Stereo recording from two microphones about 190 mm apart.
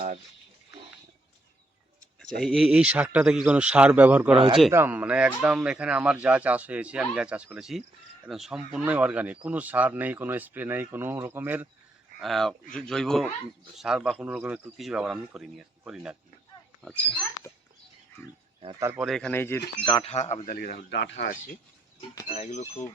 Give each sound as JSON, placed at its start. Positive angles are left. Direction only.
{"t": 2.4, "sound": "speech", "side_deg": 0}
{"t": 12.2, "sound": "a child's voice", "side_deg": 0}
{"t": 18.8, "sound": "speech", "side_deg": -10}
{"t": 19.0, "sound": "speech", "side_deg": 5}
{"t": 19.8, "sound": "speech", "side_deg": 25}
{"t": 20.5, "sound": "speech", "side_deg": 50}
{"t": 22.3, "sound": "speech", "side_deg": 35}